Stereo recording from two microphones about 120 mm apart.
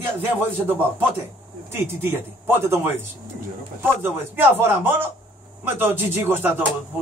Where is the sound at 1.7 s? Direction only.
20° right (ahead or behind).